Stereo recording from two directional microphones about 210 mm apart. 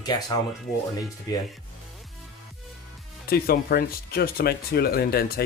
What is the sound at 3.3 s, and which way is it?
Speech, 45° left (ahead or behind).